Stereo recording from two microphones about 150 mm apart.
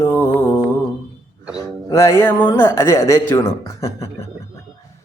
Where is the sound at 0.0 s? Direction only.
15° left (ahead or behind).